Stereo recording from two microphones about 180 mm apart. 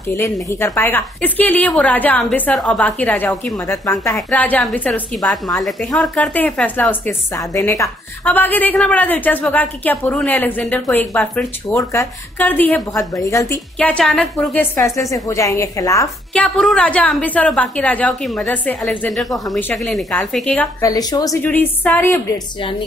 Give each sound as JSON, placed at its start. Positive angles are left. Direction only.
{"t": 0.1, "sound": "speech", "side_deg": 15}
{"t": 13.7, "sound": "speech", "side_deg": 5}
{"t": 16.3, "sound": "speech", "side_deg": 5}
{"t": 20.8, "sound": "a woman's voice", "side_deg": 20}